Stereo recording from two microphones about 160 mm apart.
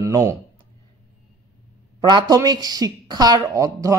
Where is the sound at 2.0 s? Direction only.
25° right (ahead or behind).